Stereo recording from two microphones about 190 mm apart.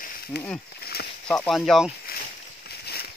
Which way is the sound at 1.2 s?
5° left (ahead or behind).